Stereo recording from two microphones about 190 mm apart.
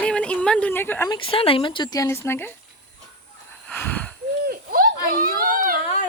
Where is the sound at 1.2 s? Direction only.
30° left (ahead or behind); by 2.5 s 10° left (ahead or behind).